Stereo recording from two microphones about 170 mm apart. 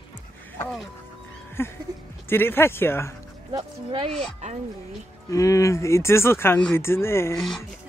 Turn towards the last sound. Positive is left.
turn(degrees=0)  # may be behind; listen again after turning